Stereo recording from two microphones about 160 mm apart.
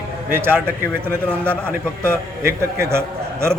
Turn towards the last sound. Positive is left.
turn(degrees=-15)  # may be behind; listen again after turning